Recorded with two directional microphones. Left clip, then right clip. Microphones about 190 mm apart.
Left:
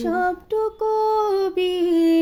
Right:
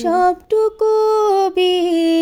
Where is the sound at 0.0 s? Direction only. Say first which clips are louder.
Right 7 dB; 50° right (ahead or behind).